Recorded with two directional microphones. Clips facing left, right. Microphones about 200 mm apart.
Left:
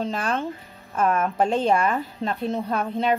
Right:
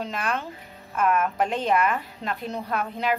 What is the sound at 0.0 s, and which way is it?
A woman's voice, 30° left (ahead or behind).